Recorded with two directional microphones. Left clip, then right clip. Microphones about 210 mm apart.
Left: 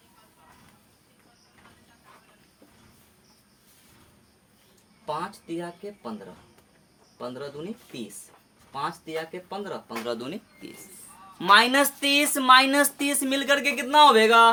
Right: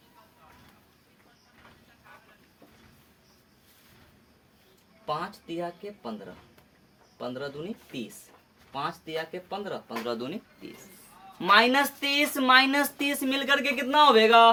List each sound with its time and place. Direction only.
5.0 s speech: 15° left (ahead or behind)
7.2 s speech: 15° left (ahead or behind)
8.7 s speech: 10° left (ahead or behind)